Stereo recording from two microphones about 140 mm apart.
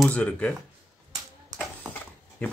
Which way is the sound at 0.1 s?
10° left (ahead or behind).